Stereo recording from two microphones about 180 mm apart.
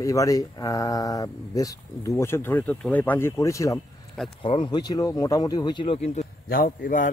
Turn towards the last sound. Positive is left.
turn(degrees=50)  # may be behind; listen again after turning